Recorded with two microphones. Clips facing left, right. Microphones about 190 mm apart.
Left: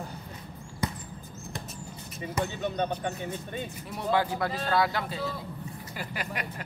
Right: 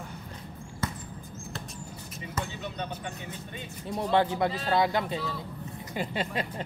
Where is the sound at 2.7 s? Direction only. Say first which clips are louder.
Left 7 dB; 50° left (ahead or behind).